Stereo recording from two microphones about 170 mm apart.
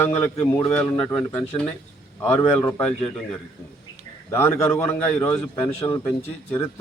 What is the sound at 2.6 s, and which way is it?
Speech, 20° left (ahead or behind).